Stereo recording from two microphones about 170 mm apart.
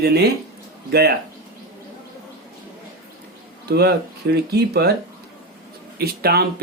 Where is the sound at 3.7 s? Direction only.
70° right (ahead or behind).